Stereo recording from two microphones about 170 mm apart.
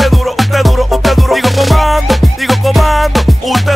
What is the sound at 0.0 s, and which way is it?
Music, centre (ahead or behind).